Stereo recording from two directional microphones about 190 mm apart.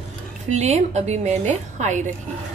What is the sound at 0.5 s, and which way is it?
A woman's voice, 35° right (ahead or behind).